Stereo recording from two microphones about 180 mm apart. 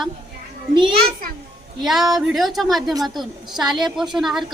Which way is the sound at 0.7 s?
25° right (ahead or behind).